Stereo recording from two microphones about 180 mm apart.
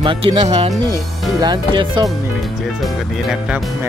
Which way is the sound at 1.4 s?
25° right (ahead or behind).